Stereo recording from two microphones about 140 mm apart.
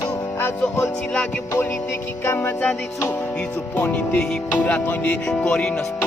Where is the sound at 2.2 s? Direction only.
15° left (ahead or behind).